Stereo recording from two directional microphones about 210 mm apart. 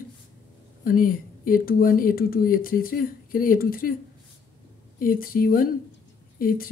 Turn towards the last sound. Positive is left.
turn(degrees=45)  # may be behind; listen again after turning